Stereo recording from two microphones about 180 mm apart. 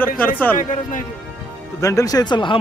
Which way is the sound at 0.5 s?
45° left (ahead or behind).